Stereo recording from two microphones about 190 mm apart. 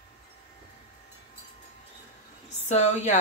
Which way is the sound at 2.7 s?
40° left (ahead or behind).